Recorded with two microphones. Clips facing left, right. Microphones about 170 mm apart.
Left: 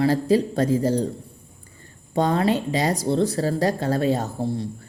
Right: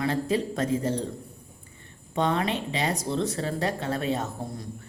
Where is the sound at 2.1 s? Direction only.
35° left (ahead or behind).